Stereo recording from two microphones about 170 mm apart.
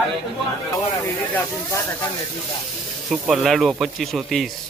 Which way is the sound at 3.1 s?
Centre (ahead or behind).